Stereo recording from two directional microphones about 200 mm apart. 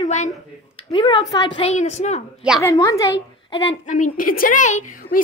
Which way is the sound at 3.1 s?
60° left (ahead or behind).